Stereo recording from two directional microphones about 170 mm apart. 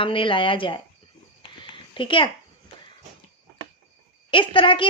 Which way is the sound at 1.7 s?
30° left (ahead or behind).